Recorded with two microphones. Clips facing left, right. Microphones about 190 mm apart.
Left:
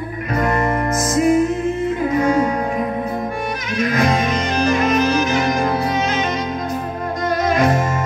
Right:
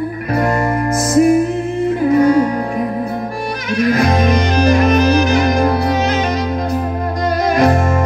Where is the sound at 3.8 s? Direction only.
35° right (ahead or behind).